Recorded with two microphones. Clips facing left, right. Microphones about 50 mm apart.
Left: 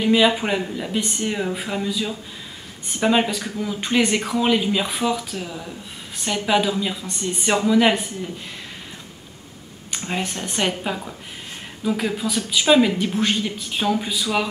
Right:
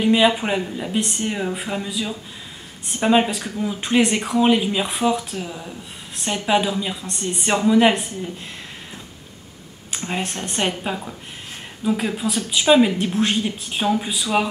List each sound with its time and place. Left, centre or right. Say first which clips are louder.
0.0 s speech: right 1 dB; centre
3.0 s speech: right 2 dB; centre
9.9 s speech: even; centre
14.2 s speech: right 3 dB; centre